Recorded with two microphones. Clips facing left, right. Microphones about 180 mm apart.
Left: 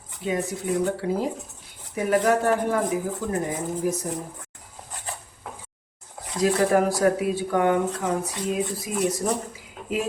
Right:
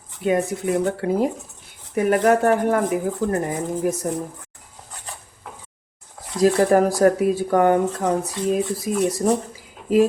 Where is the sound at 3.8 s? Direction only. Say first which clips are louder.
Right 2 dB; 55° right (ahead or behind).